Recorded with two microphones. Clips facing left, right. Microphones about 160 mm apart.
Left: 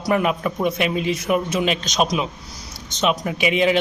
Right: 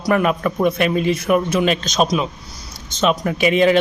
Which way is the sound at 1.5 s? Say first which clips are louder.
Right 4 dB; 15° left (ahead or behind).